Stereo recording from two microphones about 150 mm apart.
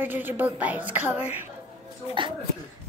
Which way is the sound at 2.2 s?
35° right (ahead or behind).